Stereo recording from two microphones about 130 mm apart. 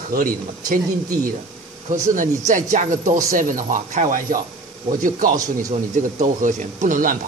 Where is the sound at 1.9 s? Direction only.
80° right.